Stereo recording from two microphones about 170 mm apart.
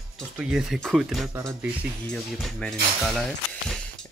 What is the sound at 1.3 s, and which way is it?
Speech, 15° right (ahead or behind).